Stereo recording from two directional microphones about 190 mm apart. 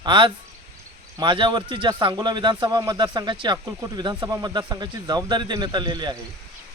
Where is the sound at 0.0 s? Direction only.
25° right (ahead or behind).